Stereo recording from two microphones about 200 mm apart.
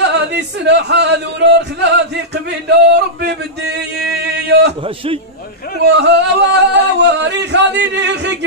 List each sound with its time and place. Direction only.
0.0 s speech: 60° right (ahead or behind)
3.7 s a sound: 55° right (ahead or behind)
4.8 s a man's voice: 25° right (ahead or behind)
5.8 s singing: 55° right (ahead or behind)